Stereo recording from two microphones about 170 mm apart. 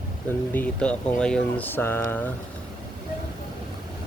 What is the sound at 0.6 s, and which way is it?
Speech, 5° left (ahead or behind).